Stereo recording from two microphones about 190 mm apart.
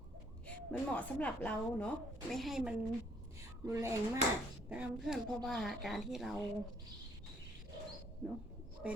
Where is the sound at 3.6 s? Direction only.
15° right (ahead or behind).